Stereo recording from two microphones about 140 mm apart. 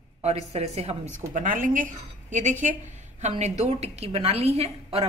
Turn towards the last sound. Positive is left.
turn(degrees=-45)  # may be behind; listen again after turning